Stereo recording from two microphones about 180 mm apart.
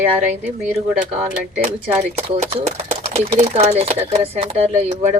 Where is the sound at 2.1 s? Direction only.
35° right (ahead or behind).